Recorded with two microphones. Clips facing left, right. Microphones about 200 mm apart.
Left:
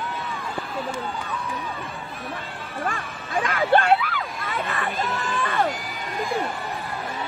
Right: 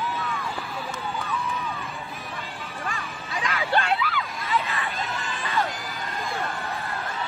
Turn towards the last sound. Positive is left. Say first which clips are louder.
# left 5 dB
turn(degrees=50)  # may be behind; listen again after turning